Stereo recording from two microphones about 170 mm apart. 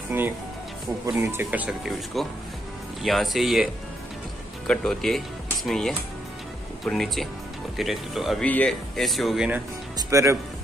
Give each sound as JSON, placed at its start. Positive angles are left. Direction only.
{"t": 0.1, "sound": "speech", "side_deg": -10}
{"t": 4.6, "sound": "speech", "side_deg": 5}
{"t": 9.9, "sound": "speech", "side_deg": -20}